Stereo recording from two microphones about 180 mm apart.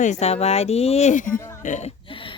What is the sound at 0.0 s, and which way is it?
Speech, 40° left (ahead or behind).